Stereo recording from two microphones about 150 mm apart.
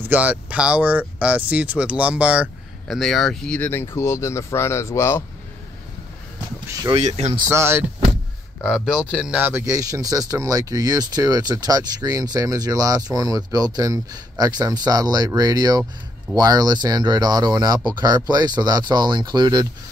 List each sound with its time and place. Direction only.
0.1 s speech: 10° right (ahead or behind)
3.0 s speech: centre (ahead or behind); by 5.2 s 15° left (ahead or behind)
7.0 s speech: 50° right (ahead or behind)
7.3 s speech: 20° right (ahead or behind)
8.6 s speech: 5° right (ahead or behind)
9.7 s speech: 20° right (ahead or behind)